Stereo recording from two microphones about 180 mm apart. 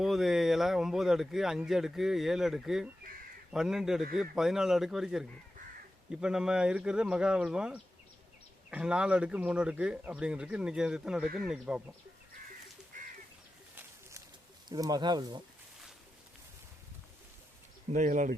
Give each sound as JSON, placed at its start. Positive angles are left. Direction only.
{"t": 0.0, "sound": "speech", "side_deg": 0}
{"t": 14.7, "sound": "speech", "side_deg": -20}
{"t": 17.9, "sound": "speech", "side_deg": -45}